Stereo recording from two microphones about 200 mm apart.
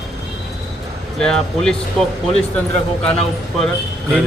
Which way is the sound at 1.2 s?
5° left (ahead or behind).